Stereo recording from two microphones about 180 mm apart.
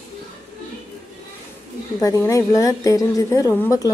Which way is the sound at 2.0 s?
20° left (ahead or behind).